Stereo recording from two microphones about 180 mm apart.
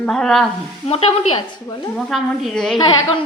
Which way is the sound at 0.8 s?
30° left (ahead or behind).